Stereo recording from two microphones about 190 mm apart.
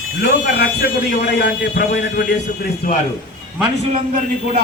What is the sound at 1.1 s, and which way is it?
A man's voice, 60° left (ahead or behind).